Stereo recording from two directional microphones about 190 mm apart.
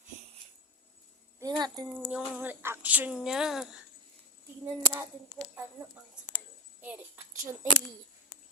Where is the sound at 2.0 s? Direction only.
10° right (ahead or behind).